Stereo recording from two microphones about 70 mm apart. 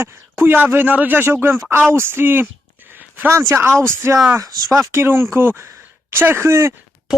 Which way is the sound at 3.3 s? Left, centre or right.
Right.